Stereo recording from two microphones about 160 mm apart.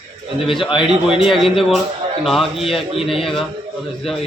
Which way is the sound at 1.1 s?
Centre (ahead or behind).